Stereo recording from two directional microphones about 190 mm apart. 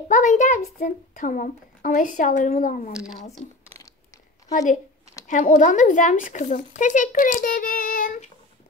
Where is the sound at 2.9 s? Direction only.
5° right (ahead or behind).